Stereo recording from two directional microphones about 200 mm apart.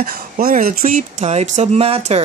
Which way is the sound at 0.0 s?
50° right (ahead or behind).